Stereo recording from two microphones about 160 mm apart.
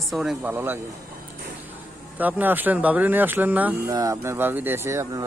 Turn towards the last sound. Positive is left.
turn(degrees=-20)  # may be behind; listen again after turning